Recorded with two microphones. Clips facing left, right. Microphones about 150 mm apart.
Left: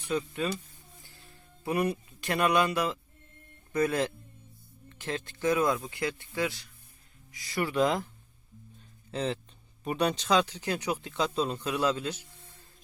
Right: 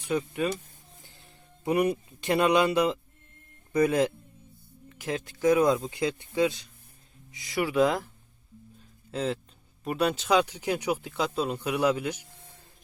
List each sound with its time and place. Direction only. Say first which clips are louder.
0.0 s speech: right 3 dB; 15° right (ahead or behind)
9.1 s speech: right 2 dB; 5° right (ahead or behind)